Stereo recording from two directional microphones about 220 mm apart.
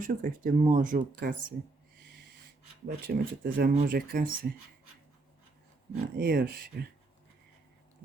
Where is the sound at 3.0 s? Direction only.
40° right (ahead or behind).